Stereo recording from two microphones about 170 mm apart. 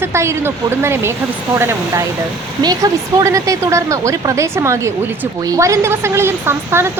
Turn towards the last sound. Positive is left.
turn(degrees=-15)  # may be behind; listen again after turning